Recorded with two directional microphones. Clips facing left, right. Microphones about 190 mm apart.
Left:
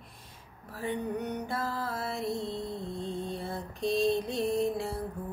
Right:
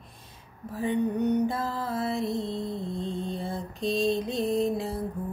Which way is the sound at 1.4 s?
20° right (ahead or behind).